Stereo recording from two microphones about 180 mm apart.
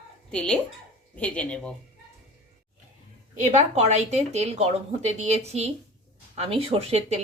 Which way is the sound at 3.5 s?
40° right (ahead or behind).